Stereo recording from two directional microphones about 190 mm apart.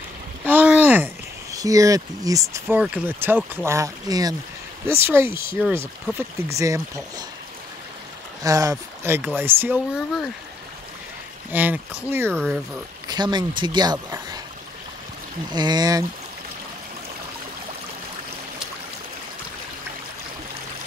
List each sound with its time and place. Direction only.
0.5 s a sound: 10° right (ahead or behind)
2.8 s speech: 10° right (ahead or behind)
8.5 s speech: 20° right (ahead or behind)
11.5 s speech: 10° right (ahead or behind)
13.1 s speech: 20° right (ahead or behind)
15.5 s speech: 20° right (ahead or behind)